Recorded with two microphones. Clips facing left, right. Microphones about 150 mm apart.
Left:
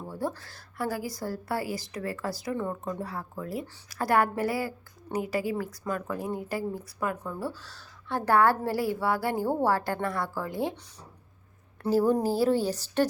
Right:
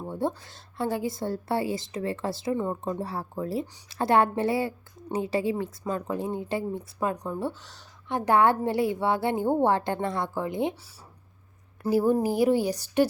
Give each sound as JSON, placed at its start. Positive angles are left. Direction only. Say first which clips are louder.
{"t": 0.0, "sound": "a woman's voice", "louder": "right 4 dB", "side_deg": -25}
{"t": 11.8, "sound": "a woman's voice", "louder": "right 1 dB", "side_deg": -10}